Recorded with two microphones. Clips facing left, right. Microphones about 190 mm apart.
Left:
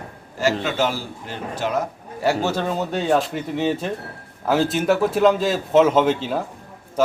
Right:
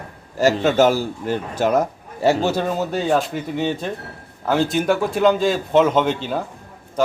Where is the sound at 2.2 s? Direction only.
15° right (ahead or behind).